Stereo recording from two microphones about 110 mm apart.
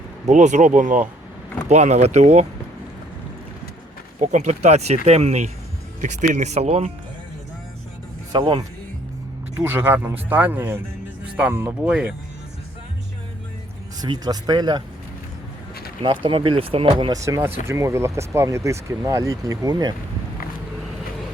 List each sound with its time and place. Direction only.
0.3 s speech: 90° right
4.2 s speech: 90° right; by 6.9 s 70° right (ahead or behind)
8.3 s speech: 45° right (ahead or behind)
9.6 s speech: 20° right (ahead or behind)
11.8 s speech: 10° right (ahead or behind)
14.0 s speech: 40° right (ahead or behind)
16.0 s speech: 50° right (ahead or behind)
17.1 s speech: 30° right (ahead or behind)